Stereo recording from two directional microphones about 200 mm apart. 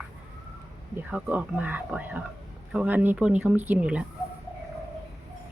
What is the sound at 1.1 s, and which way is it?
Speech, 5° right (ahead or behind).